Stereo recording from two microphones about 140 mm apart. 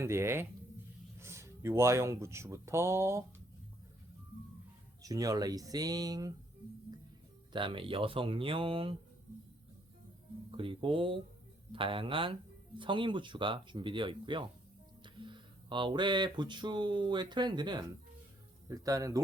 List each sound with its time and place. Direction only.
0.0 s speech: 20° right (ahead or behind)
5.0 s speech: 25° right (ahead or behind)
7.5 s speech: 35° right (ahead or behind)
10.6 s speech: 40° right (ahead or behind); by 19.2 s 25° right (ahead or behind)